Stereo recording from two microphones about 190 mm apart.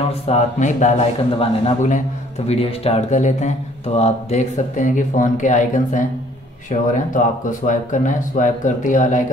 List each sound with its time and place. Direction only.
0.3 s a man's voice: 40° left (ahead or behind)